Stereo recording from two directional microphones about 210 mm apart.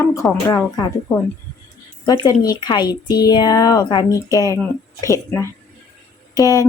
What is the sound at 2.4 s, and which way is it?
A woman's voice, 20° left (ahead or behind).